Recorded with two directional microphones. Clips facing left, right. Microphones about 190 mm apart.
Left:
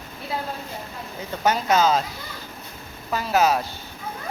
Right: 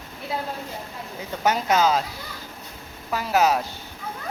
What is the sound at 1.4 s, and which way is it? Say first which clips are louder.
Speech: left 1 dB; 15° right (ahead or behind).